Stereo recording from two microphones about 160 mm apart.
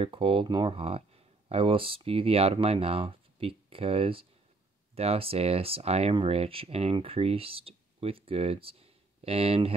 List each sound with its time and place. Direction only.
0.0 s speech: 35° right (ahead or behind)